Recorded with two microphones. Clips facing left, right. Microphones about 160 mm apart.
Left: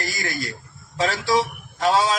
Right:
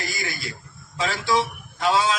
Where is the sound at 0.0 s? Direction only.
40° left (ahead or behind).